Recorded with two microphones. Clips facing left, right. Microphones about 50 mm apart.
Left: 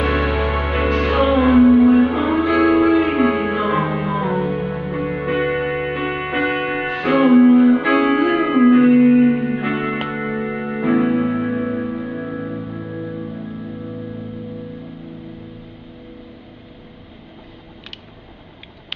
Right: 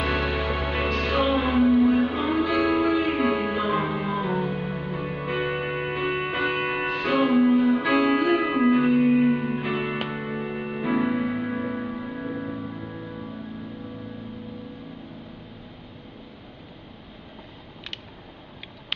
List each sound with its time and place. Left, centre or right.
0.0 s music: left
5.6 s music: centre
5.9 s music: left
6.6 s music: centre
6.9 s music: left
7.5 s music: left
7.8 s music: left
9.1 s music: centre
9.5 s music: left
11.2 s music: left
11.6 s music: centre
11.9 s music: left